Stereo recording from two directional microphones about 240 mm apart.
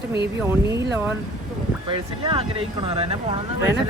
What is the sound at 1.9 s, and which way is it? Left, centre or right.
Speech, right.